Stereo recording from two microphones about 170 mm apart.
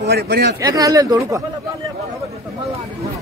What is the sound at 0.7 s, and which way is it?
Speech, 20° right (ahead or behind).